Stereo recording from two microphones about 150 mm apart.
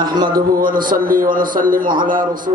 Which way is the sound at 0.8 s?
70° right (ahead or behind).